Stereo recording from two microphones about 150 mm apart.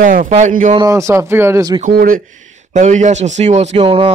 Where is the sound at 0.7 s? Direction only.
25° right (ahead or behind).